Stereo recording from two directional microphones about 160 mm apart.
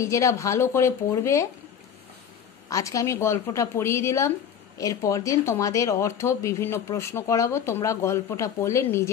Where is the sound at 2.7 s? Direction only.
20° left (ahead or behind).